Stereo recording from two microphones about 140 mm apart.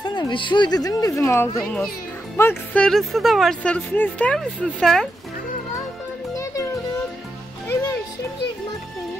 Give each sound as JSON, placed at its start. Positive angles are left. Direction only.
{"t": 0.0, "sound": "speech", "side_deg": 30}
{"t": 2.8, "sound": "speech", "side_deg": 0}
{"t": 6.3, "sound": "music", "side_deg": 25}